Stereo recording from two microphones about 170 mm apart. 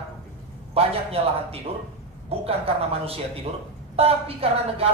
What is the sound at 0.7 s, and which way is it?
A woman's voice, 35° right (ahead or behind).